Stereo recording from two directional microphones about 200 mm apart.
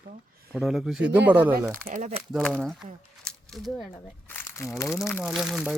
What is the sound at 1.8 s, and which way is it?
Speech, 40° right (ahead or behind).